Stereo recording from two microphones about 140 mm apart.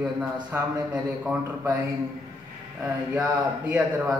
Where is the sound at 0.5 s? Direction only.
15° right (ahead or behind).